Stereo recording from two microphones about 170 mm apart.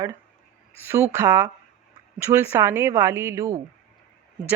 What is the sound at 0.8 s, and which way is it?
Speech, 15° right (ahead or behind).